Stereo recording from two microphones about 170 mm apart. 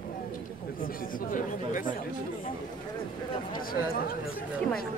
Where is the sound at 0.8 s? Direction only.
55° left (ahead or behind).